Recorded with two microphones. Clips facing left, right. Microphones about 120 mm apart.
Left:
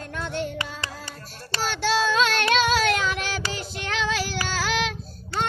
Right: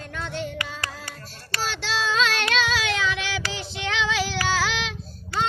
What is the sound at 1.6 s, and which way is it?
Child singing, 50° left (ahead or behind).